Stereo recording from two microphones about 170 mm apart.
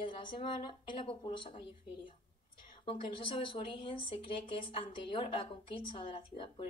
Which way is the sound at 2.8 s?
30° left (ahead or behind).